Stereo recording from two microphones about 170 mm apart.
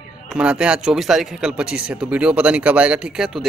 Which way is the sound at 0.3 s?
5° right (ahead or behind).